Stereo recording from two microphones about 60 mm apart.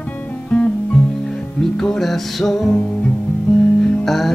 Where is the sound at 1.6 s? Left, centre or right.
Centre.